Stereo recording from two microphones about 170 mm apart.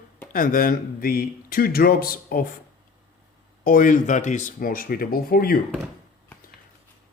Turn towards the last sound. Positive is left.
turn(degrees=60)  # may be behind; listen again after turning